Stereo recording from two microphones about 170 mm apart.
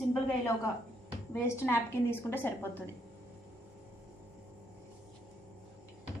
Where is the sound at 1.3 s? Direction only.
15° left (ahead or behind).